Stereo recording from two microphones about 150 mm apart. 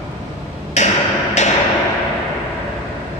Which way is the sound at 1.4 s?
50° left (ahead or behind).